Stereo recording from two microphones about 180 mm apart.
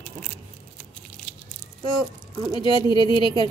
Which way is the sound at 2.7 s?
25° left (ahead or behind).